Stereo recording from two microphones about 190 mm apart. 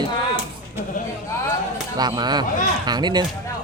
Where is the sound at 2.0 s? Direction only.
20° right (ahead or behind).